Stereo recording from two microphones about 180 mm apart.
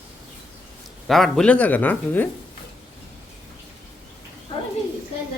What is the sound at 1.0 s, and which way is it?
Speech, centre (ahead or behind).